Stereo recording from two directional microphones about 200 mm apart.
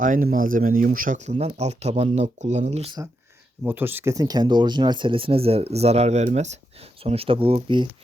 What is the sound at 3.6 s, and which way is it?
Speech, 10° right (ahead or behind).